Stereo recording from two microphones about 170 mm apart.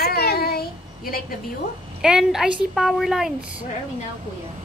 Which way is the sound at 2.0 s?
5° right (ahead or behind).